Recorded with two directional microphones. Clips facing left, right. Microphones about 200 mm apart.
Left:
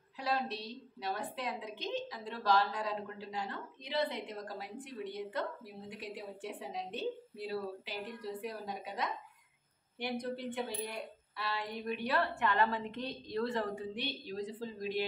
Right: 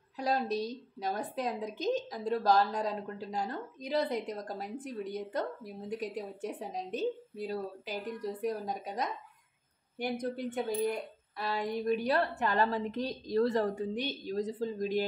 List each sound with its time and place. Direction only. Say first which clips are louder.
0.2 s a woman's voice: right 5 dB; 40° right (ahead or behind)